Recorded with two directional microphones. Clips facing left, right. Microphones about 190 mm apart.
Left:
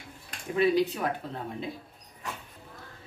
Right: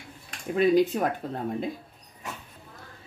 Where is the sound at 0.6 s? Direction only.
50° right (ahead or behind).